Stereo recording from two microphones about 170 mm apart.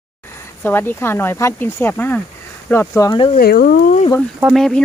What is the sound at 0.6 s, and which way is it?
Speech, 10° left (ahead or behind).